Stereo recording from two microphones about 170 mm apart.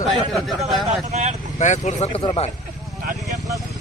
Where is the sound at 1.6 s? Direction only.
45° left (ahead or behind).